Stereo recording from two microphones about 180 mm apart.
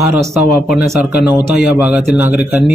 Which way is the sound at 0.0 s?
15° right (ahead or behind).